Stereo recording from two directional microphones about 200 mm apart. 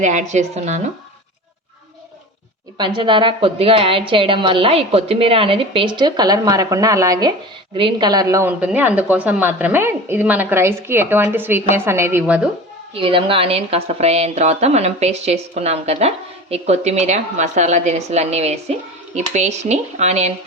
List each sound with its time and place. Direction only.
0.0 s a woman's voice: 35° right (ahead or behind)
2.7 s a woman's voice: 25° right (ahead or behind)
12.9 s a woman's voice: 25° right (ahead or behind)